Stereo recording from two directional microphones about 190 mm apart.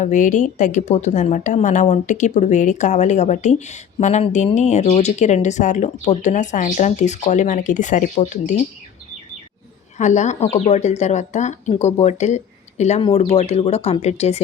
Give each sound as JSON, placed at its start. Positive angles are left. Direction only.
{"t": 0.0, "sound": "a woman's voice", "side_deg": 40}
{"t": 10.0, "sound": "a woman's voice", "side_deg": 40}